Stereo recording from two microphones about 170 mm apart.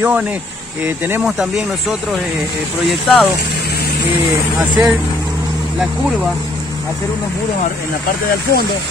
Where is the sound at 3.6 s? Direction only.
65° left (ahead or behind).